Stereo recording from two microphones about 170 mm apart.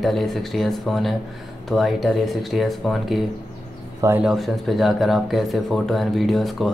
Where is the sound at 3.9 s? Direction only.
15° right (ahead or behind).